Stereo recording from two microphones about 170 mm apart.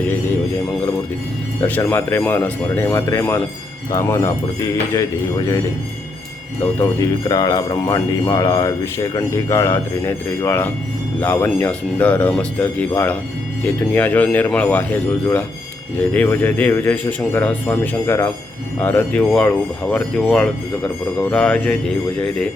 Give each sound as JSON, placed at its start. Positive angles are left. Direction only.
{"t": 1.6, "sound": "a man's voice", "side_deg": 10}
{"t": 6.7, "sound": "a man's voice", "side_deg": 20}